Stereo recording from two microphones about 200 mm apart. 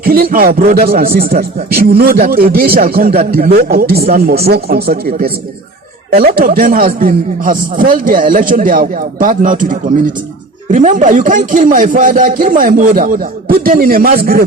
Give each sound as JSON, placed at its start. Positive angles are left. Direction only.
{"t": 0.0, "sound": "a man's voice", "side_deg": -45}